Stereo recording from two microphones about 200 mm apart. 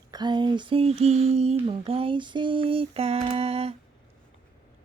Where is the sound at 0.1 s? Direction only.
20° right (ahead or behind).